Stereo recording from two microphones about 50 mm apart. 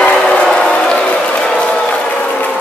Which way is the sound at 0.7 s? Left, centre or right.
Centre.